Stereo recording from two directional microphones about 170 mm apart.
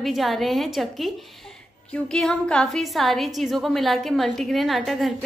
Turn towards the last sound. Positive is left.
turn(degrees=0)  # may be behind; listen again after turning